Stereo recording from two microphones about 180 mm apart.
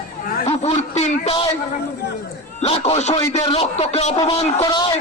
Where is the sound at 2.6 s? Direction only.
35° left (ahead or behind).